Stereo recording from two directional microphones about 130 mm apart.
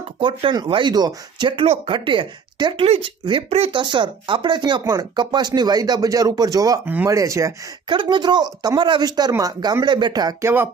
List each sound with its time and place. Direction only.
0.0 s speech: 40° right (ahead or behind)
6.8 s speech: 15° right (ahead or behind)
7.9 s speech: 35° right (ahead or behind)
10.4 s speech: 15° right (ahead or behind)